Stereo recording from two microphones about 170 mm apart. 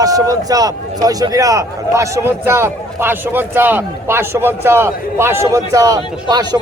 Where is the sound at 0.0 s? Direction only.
20° right (ahead or behind).